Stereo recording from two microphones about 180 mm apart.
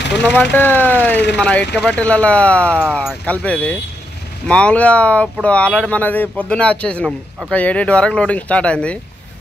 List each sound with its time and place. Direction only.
0.2 s speech: 10° left (ahead or behind)